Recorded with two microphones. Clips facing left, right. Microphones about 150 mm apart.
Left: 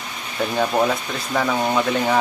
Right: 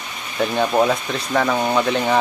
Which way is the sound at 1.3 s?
Centre (ahead or behind).